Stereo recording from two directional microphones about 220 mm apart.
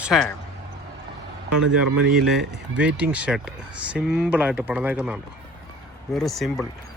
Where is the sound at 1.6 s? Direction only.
90° right.